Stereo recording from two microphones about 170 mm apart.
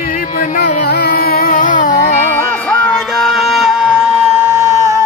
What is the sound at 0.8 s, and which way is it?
Carnatic music, 70° left (ahead or behind).